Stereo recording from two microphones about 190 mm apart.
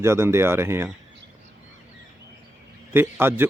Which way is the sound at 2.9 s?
10° right (ahead or behind).